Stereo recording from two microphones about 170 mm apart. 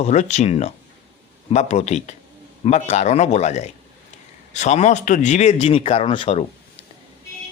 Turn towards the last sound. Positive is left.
turn(degrees=30)  # may be behind; listen again after turning